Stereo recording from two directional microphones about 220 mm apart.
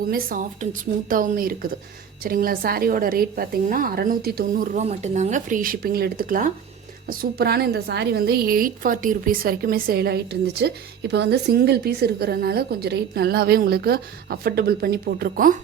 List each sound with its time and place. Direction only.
0.1 s a woman's voice: 40° right (ahead or behind)